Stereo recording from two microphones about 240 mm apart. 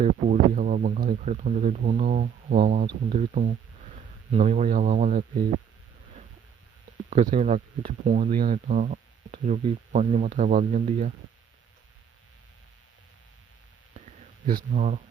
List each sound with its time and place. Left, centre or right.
0.0 s speech: right
7.1 s speech: right
14.4 s speech: right